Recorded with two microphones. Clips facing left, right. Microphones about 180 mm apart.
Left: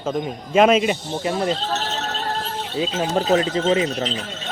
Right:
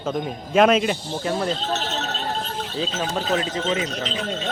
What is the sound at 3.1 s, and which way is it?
Speech, 40° left (ahead or behind).